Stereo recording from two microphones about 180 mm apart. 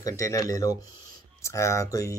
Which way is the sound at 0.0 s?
15° left (ahead or behind).